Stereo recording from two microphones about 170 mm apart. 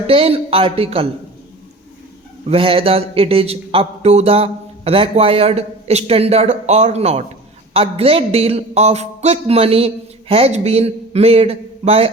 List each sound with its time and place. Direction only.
0.1 s a man's voice: 35° right (ahead or behind)
2.5 s a man's voice: 35° right (ahead or behind)